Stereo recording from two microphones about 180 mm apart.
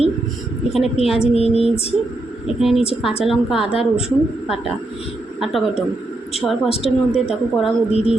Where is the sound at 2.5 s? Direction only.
Centre (ahead or behind).